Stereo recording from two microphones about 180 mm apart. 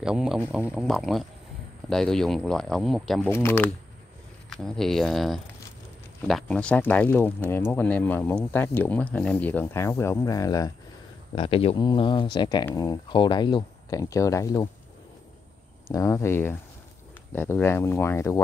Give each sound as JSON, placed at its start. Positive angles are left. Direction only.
{"t": 0.0, "sound": "speech", "side_deg": -5}
{"t": 3.3, "sound": "speech", "side_deg": 15}
{"t": 4.5, "sound": "speech", "side_deg": 0}
{"t": 11.3, "sound": "speech", "side_deg": 30}
{"t": 15.9, "sound": "speech", "side_deg": 15}